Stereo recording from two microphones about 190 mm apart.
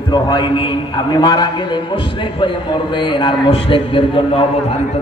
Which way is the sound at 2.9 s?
25° left (ahead or behind).